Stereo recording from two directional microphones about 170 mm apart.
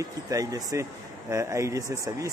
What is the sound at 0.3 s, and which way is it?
A man's voice, 20° right (ahead or behind).